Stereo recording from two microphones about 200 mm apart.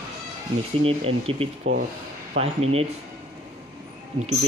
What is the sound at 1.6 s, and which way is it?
Speech, 85° right.